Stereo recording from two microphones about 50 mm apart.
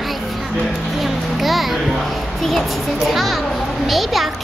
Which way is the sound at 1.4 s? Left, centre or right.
Centre.